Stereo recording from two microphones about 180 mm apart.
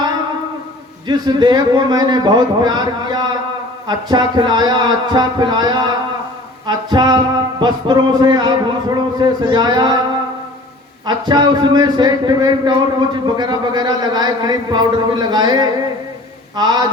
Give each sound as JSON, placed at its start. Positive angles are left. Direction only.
{"t": 1.0, "sound": "a man's voice", "side_deg": -25}
{"t": 11.0, "sound": "a man's voice", "side_deg": -25}